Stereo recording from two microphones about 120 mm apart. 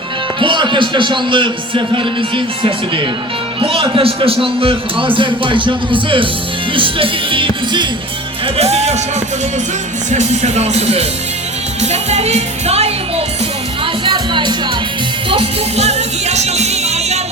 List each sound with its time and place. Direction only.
0.3 s a man's voice: 40° right (ahead or behind)
8.5 s speech: 60° right (ahead or behind)
10.1 s speech: 70° right (ahead or behind)
14.0 s music: 40° right (ahead or behind)
15.3 s music: 55° right (ahead or behind)